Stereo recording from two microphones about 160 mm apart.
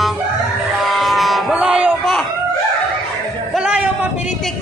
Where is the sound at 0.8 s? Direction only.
Centre (ahead or behind).